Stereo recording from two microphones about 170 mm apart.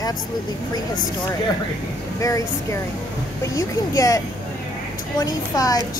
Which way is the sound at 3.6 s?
20° left (ahead or behind).